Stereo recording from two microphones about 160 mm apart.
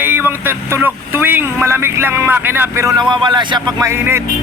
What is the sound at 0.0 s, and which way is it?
Vehicle, 15° right (ahead or behind).